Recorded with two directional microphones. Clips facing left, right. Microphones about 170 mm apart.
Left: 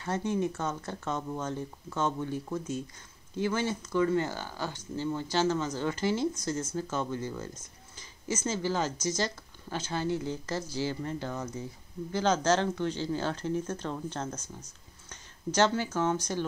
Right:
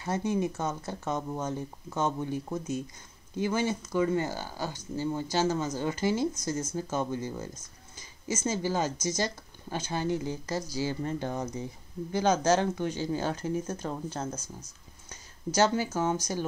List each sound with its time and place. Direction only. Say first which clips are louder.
0.0 s speech: right 1 dB; 10° right (ahead or behind)
14.3 s speech: right 1 dB; 40° right (ahead or behind)
15.0 s speech: even; 10° right (ahead or behind)